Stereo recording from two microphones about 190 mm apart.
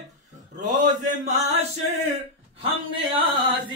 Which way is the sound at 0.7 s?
40° right (ahead or behind).